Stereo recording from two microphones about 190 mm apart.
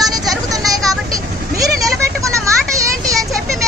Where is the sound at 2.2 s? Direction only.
15° right (ahead or behind).